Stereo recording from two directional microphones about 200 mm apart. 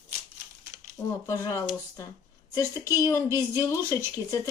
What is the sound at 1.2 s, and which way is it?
A woman's voice, 15° left (ahead or behind).